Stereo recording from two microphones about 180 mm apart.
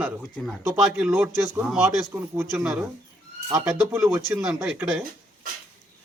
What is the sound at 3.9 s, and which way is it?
A man's voice, 15° right (ahead or behind).